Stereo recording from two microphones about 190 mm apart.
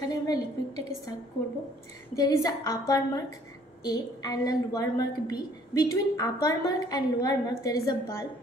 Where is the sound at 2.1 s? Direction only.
20° left (ahead or behind).